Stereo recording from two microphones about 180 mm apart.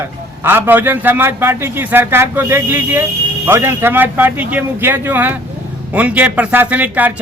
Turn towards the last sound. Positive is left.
turn(degrees=-10)  # may be behind; listen again after turning